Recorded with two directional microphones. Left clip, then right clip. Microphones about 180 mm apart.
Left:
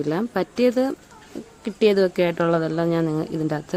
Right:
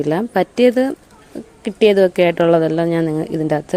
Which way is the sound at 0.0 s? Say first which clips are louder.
Right 7 dB; 20° right (ahead or behind).